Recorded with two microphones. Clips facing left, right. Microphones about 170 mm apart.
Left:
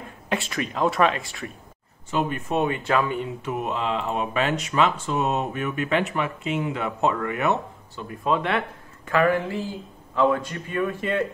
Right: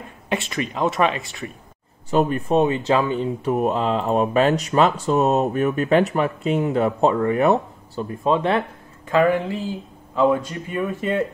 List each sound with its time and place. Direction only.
0.3 s speech: centre (ahead or behind)
2.0 s speech: 35° right (ahead or behind)
9.1 s speech: 20° right (ahead or behind)